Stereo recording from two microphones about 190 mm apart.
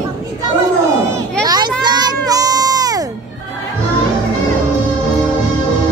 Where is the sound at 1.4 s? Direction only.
20° right (ahead or behind).